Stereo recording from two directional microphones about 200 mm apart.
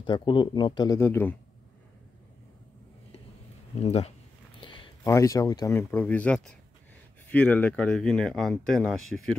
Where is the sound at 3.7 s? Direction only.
30° left (ahead or behind).